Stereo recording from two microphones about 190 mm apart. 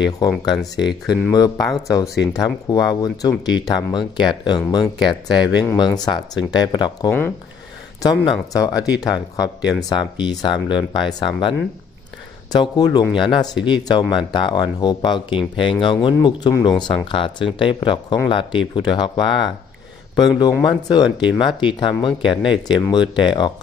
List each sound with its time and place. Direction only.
1.0 s speech: 5° right (ahead or behind)
2.3 s speech: 20° left (ahead or behind)
7.1 s speech: 10° left (ahead or behind)
8.0 s speech: 20° left (ahead or behind)
9.6 s speech: 5° right (ahead or behind)
9.8 s speech: 25° left (ahead or behind)
12.5 s speech: 20° left (ahead or behind)